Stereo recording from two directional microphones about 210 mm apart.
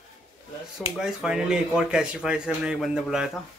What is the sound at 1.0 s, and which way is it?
Speech, 5° right (ahead or behind).